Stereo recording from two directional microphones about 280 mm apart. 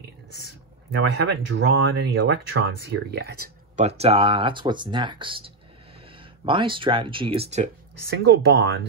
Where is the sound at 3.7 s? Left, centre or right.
Right.